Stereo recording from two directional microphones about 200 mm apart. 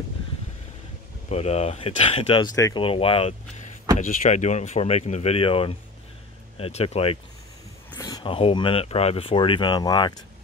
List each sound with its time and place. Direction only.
1.3 s speech: 30° left (ahead or behind)
4.0 s speech: 40° left (ahead or behind); by 10.2 s 20° left (ahead or behind)